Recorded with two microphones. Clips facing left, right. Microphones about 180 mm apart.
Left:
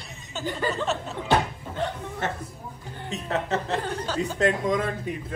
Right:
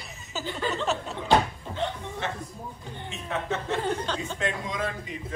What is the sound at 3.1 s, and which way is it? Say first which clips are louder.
Speech: left 4 dB; 40° left (ahead or behind).